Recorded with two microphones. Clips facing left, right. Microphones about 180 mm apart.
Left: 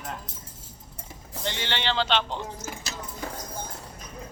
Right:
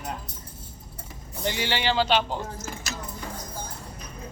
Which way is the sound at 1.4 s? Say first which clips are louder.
Right 3 dB; 10° right (ahead or behind).